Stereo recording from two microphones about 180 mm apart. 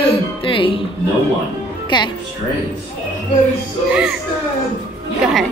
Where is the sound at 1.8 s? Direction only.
25° left (ahead or behind).